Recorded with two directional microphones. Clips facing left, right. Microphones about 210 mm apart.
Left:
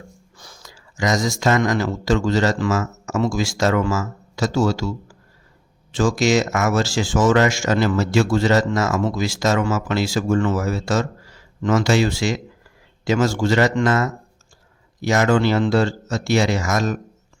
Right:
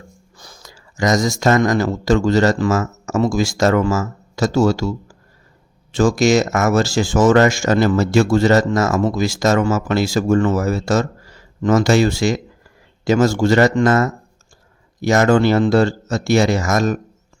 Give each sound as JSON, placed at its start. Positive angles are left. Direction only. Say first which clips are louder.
{"t": 0.3, "sound": "speech", "louder": "right 2 dB", "side_deg": -40}